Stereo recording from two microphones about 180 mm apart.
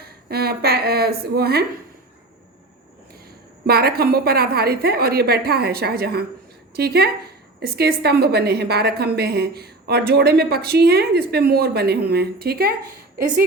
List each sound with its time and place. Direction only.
0.0 s a woman's voice: 60° right (ahead or behind)
3.7 s a woman's voice: 60° right (ahead or behind)